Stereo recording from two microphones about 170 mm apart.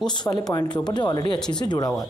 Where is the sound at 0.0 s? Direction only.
25° left (ahead or behind).